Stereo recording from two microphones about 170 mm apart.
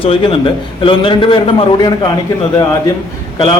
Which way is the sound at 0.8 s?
30° left (ahead or behind).